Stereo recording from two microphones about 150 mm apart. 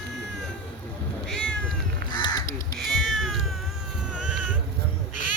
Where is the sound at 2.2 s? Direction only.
25° left (ahead or behind).